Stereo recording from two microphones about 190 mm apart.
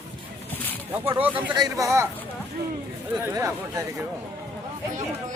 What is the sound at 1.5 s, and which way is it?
Speech, 15° right (ahead or behind).